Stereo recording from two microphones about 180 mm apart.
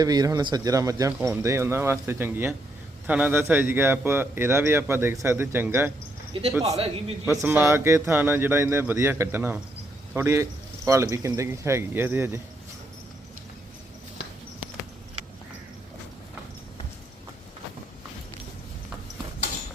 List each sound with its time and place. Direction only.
0.0 s a man's voice: 20° right (ahead or behind)
6.7 s a man's voice: 30° right (ahead or behind)
7.3 s speech: 10° right (ahead or behind)